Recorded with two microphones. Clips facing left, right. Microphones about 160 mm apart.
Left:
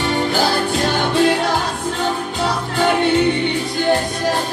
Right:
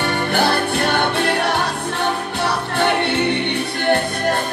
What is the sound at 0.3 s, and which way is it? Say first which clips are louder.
Music: even; 60° right (ahead or behind).